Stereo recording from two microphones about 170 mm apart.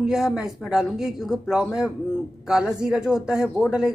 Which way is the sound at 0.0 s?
5° right (ahead or behind).